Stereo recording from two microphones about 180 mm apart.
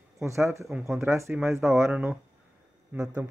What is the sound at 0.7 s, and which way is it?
Speech, centre (ahead or behind).